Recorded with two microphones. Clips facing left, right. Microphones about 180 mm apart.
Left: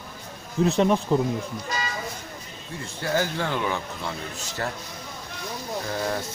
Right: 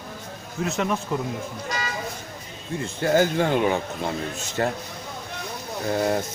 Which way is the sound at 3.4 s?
15° right (ahead or behind).